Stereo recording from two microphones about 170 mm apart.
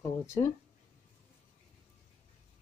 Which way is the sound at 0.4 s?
20° left (ahead or behind).